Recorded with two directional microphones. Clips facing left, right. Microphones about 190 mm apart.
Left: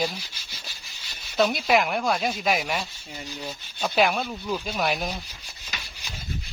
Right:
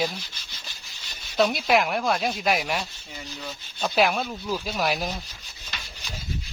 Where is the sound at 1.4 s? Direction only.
Centre (ahead or behind).